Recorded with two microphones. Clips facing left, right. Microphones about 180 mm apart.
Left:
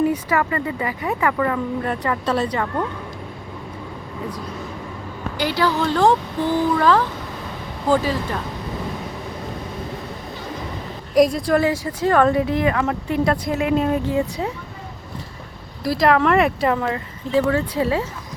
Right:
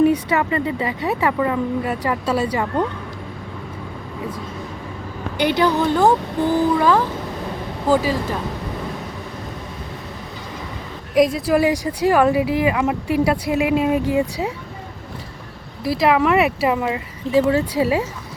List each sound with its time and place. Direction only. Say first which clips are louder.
0.0 s speech: right 3 dB; 20° right (ahead or behind)
1.8 s speech: right 1 dB; 5° right (ahead or behind)
5.4 s speech: right 3 dB; 20° right (ahead or behind)
11.1 s speech: even; 5° right (ahead or behind)
15.8 s speech: even; 5° right (ahead or behind)